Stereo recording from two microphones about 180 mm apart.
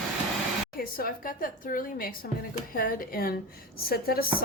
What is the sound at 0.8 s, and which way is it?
A woman's voice, 55° left (ahead or behind).